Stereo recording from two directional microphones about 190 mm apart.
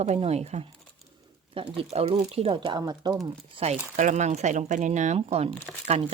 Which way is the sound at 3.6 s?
40° right (ahead or behind).